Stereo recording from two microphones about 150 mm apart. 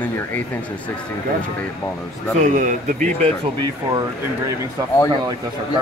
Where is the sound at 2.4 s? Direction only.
55° right (ahead or behind).